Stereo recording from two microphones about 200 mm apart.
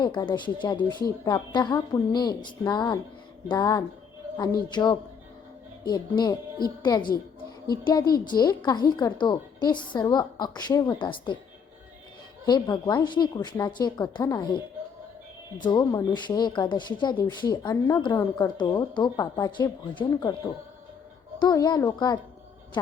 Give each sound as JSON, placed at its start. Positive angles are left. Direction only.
{"t": 0.0, "sound": "a woman's voice", "side_deg": 25}
{"t": 12.5, "sound": "a woman's voice", "side_deg": 20}
{"t": 15.6, "sound": "a woman's voice", "side_deg": 20}